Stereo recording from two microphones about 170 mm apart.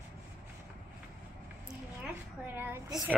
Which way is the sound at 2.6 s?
15° right (ahead or behind).